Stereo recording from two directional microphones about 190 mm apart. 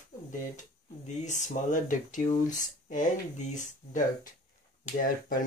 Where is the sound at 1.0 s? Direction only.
40° left (ahead or behind).